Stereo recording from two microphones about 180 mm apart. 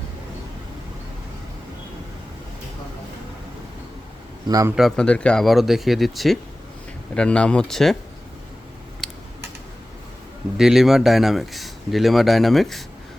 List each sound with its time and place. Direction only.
4.4 s a man's voice: 20° right (ahead or behind)
4.7 s speech: centre (ahead or behind)
9.0 s typing: centre (ahead or behind)
10.6 s speech: centre (ahead or behind)